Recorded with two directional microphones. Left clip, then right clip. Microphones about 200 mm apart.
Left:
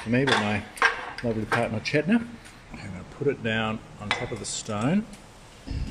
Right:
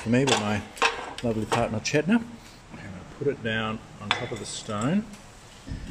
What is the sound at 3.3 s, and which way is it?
Cutlery, 15° left (ahead or behind).